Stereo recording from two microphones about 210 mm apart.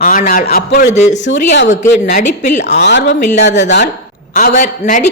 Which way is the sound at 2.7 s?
55° left (ahead or behind).